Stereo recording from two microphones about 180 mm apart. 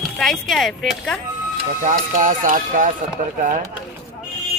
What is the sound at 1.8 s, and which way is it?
Speech, 45° right (ahead or behind).